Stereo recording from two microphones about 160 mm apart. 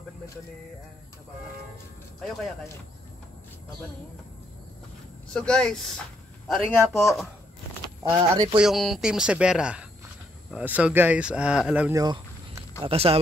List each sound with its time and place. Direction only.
5.3 s speech: 5° left (ahead or behind)
8.2 s speech: 30° right (ahead or behind)
8.5 s speech: centre (ahead or behind)
11.9 s a sound: 20° right (ahead or behind)
12.8 s speech: 40° right (ahead or behind)